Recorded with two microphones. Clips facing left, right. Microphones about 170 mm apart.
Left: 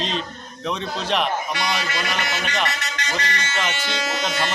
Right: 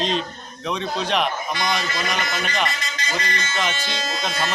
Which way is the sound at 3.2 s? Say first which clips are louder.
Right 1 dB; 70° left (ahead or behind).